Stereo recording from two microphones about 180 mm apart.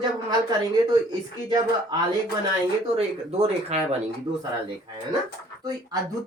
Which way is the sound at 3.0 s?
35° right (ahead or behind).